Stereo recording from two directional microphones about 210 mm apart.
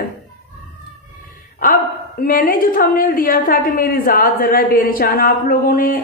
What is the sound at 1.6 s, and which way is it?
A woman's voice, 40° left (ahead or behind).